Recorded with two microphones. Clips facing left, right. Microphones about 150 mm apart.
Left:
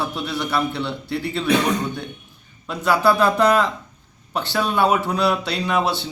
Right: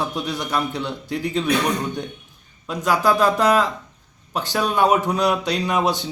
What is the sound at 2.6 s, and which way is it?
A man's voice, 10° right (ahead or behind).